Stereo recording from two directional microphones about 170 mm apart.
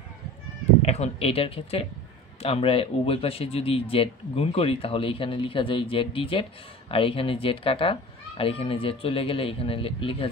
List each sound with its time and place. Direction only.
0.8 s a man's voice: 40° left (ahead or behind)